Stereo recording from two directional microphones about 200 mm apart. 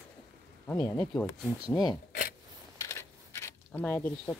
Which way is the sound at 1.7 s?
20° left (ahead or behind).